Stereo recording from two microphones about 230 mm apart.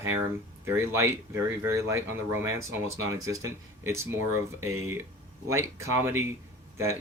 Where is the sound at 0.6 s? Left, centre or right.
Centre.